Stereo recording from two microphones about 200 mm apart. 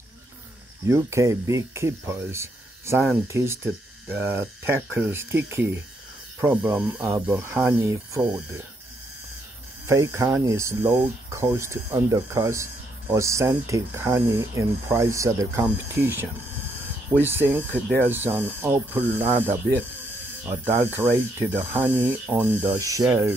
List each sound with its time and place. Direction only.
0.8 s speech: 15° right (ahead or behind)
9.8 s speech: 15° right (ahead or behind)